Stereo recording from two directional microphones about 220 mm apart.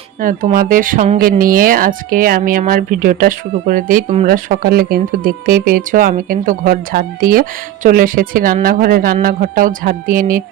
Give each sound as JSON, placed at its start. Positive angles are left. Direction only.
{"t": 0.2, "sound": "speech", "side_deg": -35}